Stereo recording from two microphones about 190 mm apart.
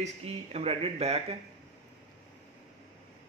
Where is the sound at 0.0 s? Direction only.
35° right (ahead or behind).